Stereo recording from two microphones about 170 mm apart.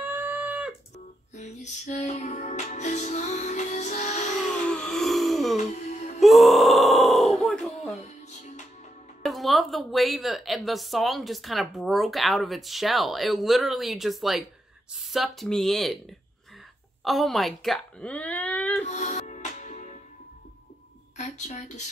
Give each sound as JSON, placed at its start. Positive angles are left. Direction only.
{"t": 0.0, "sound": "a sound", "side_deg": -10}
{"t": 0.9, "sound": "music", "side_deg": 45}
{"t": 4.6, "sound": "wail", "side_deg": 5}
{"t": 5.6, "sound": "music", "side_deg": 40}
{"t": 6.2, "sound": "grunt", "side_deg": 0}
{"t": 7.9, "sound": "music", "side_deg": 45}
{"t": 9.2, "sound": "a woman's voice", "side_deg": 0}
{"t": 18.9, "sound": "music", "side_deg": 40}
{"t": 21.2, "sound": "speech", "side_deg": 45}